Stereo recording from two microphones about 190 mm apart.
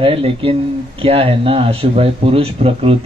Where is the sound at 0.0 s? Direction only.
30° right (ahead or behind).